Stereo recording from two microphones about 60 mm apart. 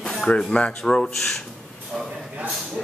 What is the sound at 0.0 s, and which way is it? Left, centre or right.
Speech, centre.